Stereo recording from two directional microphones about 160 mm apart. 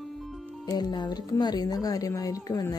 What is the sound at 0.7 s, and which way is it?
A woman's voice, 25° left (ahead or behind).